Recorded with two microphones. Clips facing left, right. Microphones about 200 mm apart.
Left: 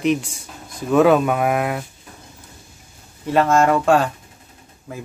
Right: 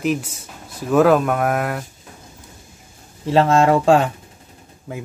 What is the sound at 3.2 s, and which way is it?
Speech, 25° right (ahead or behind).